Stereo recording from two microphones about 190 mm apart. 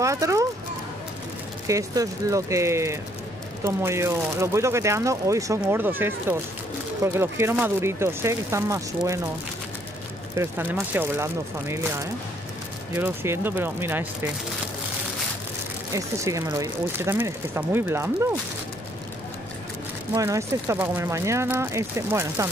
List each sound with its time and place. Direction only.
0.0 s a sound: 15° right (ahead or behind)
1.7 s speech: 15° right (ahead or behind)
10.3 s speech: 10° right (ahead or behind)
15.9 s speech: 15° right (ahead or behind)
20.2 s speech: 15° right (ahead or behind)